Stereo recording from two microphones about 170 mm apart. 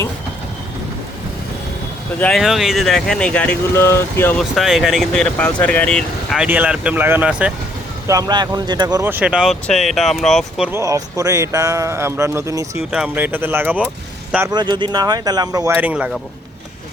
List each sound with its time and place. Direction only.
2.1 s speech: 10° left (ahead or behind)
4.4 s speech: centre (ahead or behind)
8.0 s speech: 20° right (ahead or behind); by 10.7 s centre (ahead or behind)
10.7 s speech: 20° right (ahead or behind)
14.5 s speech: 25° right (ahead or behind); by 16.0 s 10° right (ahead or behind)